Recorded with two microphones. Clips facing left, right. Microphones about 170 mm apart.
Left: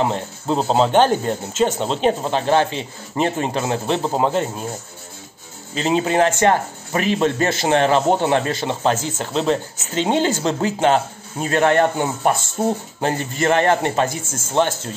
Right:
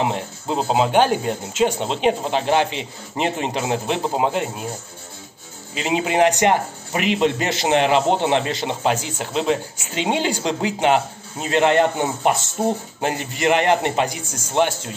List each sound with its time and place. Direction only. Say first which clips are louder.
0.0 s speech: left 2 dB; 15° right (ahead or behind)
5.8 s speech: left 1 dB; 10° right (ahead or behind)